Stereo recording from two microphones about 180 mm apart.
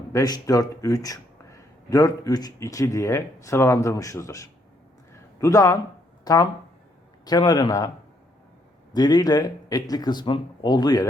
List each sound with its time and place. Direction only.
0.1 s speech: 20° left (ahead or behind)
8.9 s speech: 25° left (ahead or behind)